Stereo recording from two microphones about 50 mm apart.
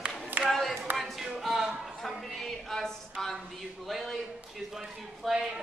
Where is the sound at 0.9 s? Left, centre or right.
Centre.